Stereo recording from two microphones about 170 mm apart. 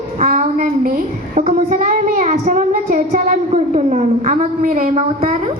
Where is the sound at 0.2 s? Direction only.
45° right (ahead or behind).